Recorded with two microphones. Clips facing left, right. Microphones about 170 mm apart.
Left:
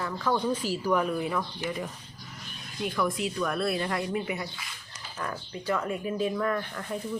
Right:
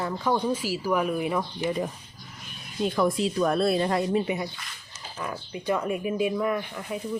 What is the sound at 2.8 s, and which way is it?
Speech, 30° right (ahead or behind).